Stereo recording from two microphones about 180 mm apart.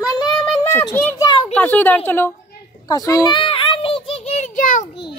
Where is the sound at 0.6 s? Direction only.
15° left (ahead or behind).